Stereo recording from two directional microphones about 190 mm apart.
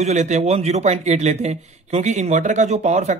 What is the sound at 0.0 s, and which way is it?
Speech, 35° right (ahead or behind).